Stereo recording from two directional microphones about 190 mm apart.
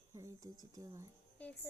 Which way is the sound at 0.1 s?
15° right (ahead or behind).